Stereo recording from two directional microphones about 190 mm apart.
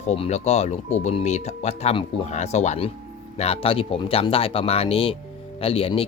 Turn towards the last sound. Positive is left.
turn(degrees=30)  # may be behind; listen again after turning